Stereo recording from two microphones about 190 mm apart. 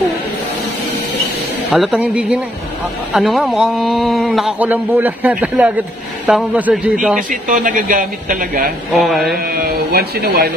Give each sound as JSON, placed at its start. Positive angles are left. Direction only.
{"t": 1.7, "sound": "a man's voice", "side_deg": 0}
{"t": 7.2, "sound": "a woman's voice", "side_deg": -45}
{"t": 8.9, "sound": "a man's voice", "side_deg": 0}
{"t": 9.4, "sound": "speech", "side_deg": -50}